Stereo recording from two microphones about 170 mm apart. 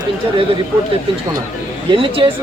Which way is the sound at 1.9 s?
30° right (ahead or behind).